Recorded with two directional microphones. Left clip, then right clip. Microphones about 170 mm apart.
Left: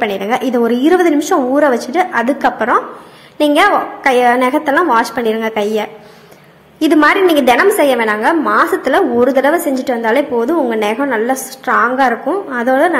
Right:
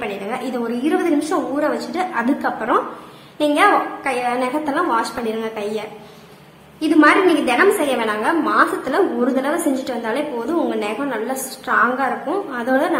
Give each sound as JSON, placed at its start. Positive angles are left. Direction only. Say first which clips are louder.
{"t": 0.3, "sound": "a woman's voice", "louder": "left 11 dB", "side_deg": 35}